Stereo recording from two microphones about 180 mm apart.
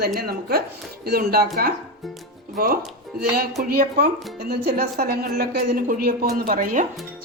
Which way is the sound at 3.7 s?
55° right (ahead or behind).